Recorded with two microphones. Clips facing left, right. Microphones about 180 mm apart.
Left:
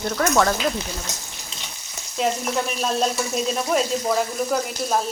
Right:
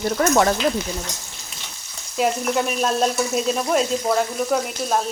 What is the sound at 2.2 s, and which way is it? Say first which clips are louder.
Frying: right 2 dB; centre (ahead or behind).